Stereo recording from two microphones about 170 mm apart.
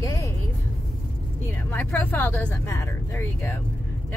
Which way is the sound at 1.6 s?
10° left (ahead or behind).